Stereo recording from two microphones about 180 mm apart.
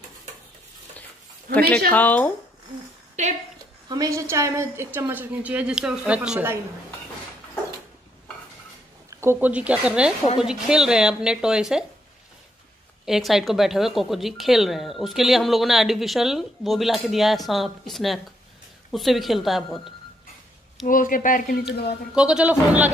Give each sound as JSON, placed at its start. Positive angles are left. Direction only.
{"t": 1.9, "sound": "speech", "side_deg": 10}
{"t": 3.2, "sound": "a woman's voice", "side_deg": -40}
{"t": 3.9, "sound": "a woman's voice", "side_deg": -20}
{"t": 9.1, "sound": "a woman's voice", "side_deg": -15}
{"t": 13.0, "sound": "speech", "side_deg": 0}
{"t": 20.8, "sound": "speech", "side_deg": 50}
{"t": 22.1, "sound": "speech", "side_deg": -5}